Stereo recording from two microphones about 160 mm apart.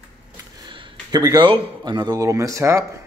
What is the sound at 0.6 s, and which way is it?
A man's voice, 30° right (ahead or behind).